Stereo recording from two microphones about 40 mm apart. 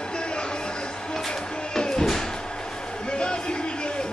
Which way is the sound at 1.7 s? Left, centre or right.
Centre.